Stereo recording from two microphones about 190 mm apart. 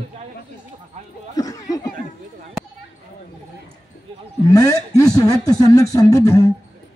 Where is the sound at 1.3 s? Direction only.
20° left (ahead or behind).